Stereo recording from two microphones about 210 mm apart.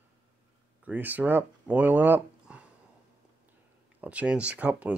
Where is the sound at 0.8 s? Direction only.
10° right (ahead or behind).